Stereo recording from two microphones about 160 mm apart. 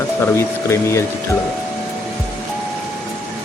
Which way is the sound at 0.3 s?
15° left (ahead or behind).